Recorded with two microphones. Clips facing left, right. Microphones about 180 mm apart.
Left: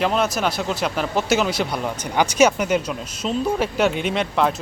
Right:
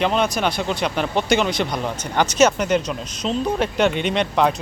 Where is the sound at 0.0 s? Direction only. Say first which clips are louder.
Right 1 dB; 5° left (ahead or behind).